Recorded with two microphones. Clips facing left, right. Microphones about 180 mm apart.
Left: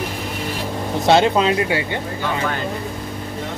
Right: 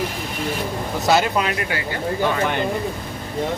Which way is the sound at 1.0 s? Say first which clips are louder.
Left 4 dB; 25° left (ahead or behind).